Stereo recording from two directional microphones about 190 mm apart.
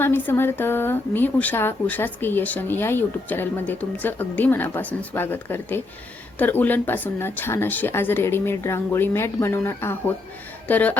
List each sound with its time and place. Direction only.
0.0 s speech: 10° left (ahead or behind)